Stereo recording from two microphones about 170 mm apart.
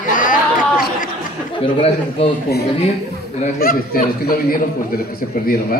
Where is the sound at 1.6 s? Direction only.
35° left (ahead or behind).